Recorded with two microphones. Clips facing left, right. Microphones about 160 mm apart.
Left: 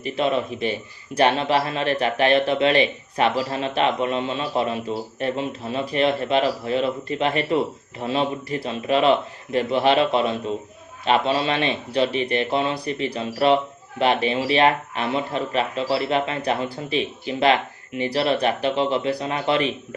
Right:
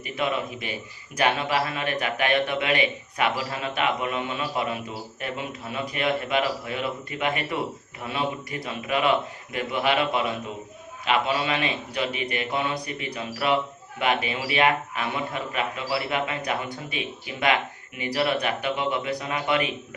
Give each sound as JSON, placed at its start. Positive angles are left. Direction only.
{"t": 1.1, "sound": "a man's voice", "side_deg": 30}